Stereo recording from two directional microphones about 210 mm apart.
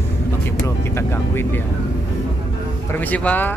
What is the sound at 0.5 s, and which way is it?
Vehicle, 15° left (ahead or behind).